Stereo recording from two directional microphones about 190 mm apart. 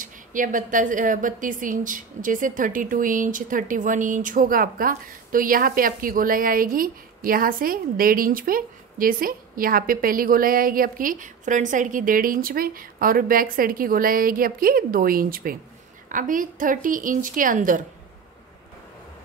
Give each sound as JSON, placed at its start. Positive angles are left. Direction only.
{"t": 0.0, "sound": "a woman's voice", "side_deg": -45}